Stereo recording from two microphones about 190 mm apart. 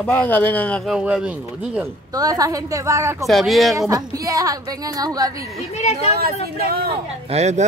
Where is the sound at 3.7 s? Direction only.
20° right (ahead or behind).